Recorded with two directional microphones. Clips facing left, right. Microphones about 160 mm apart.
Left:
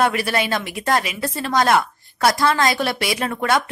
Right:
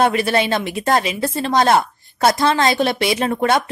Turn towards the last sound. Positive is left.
turn(degrees=-25)  # may be behind; listen again after turning